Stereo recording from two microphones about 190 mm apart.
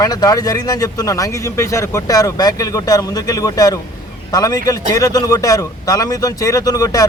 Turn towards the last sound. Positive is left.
turn(degrees=20)  # may be behind; listen again after turning